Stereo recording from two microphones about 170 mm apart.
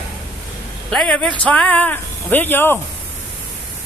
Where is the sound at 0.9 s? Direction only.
5° left (ahead or behind).